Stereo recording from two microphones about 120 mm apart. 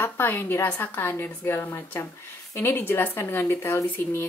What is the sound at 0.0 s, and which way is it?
Speech, 20° left (ahead or behind).